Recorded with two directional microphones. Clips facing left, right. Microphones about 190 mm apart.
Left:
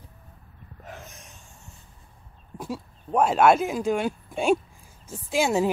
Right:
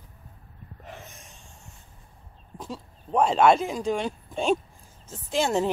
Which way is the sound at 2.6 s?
10° left (ahead or behind).